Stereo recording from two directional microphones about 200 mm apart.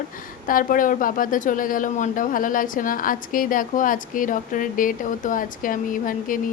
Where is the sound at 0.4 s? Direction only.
45° left (ahead or behind).